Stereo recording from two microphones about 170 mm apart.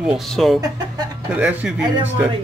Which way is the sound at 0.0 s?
Centre (ahead or behind).